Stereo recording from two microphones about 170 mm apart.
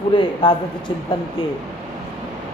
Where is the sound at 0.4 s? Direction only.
30° left (ahead or behind).